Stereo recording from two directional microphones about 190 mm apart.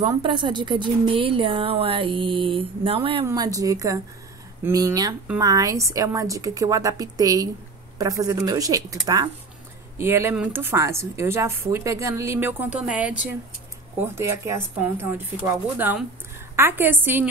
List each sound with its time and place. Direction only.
0.0 s a woman's voice: 25° right (ahead or behind)